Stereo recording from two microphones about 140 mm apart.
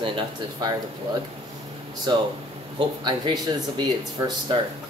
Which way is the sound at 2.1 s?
30° right (ahead or behind).